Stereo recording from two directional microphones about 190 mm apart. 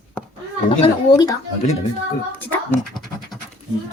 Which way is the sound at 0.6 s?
25° left (ahead or behind).